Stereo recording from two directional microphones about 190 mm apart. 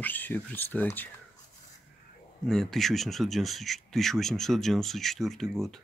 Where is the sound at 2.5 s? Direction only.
Centre (ahead or behind).